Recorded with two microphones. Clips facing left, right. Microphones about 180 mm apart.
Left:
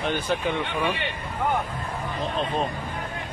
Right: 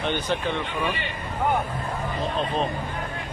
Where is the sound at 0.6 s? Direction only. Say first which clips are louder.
Left 1 dB; 70° left (ahead or behind).